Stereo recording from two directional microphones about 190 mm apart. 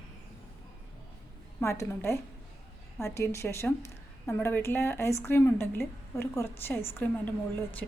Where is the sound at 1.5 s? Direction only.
15° left (ahead or behind).